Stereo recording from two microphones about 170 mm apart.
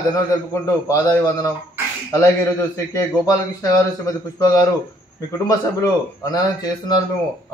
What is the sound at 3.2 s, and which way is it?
Speech, 20° left (ahead or behind).